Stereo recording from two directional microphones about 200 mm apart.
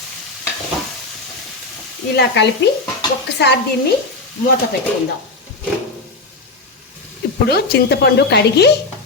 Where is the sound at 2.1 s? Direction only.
60° left (ahead or behind).